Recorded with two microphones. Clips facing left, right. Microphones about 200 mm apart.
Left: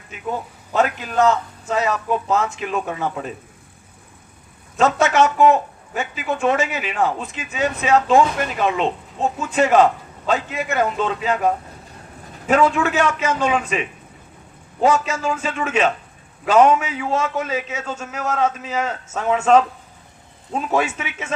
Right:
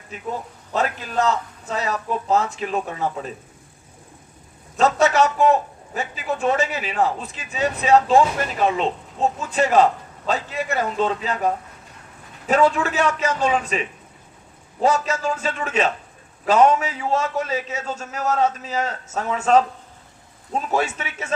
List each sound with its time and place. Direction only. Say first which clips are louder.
0.1 s a man's voice: left 2 dB; 40° right (ahead or behind)
4.8 s a man's voice: left 1 dB; 35° right (ahead or behind)
12.5 s a man's voice: left 1 dB; 35° right (ahead or behind)
14.8 s a man's voice: left 2 dB; 35° right (ahead or behind)